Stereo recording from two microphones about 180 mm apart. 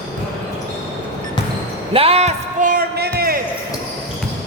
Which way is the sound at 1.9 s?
30° right (ahead or behind).